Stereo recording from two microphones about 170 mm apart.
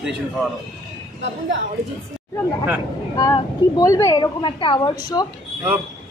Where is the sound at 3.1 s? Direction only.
20° left (ahead or behind).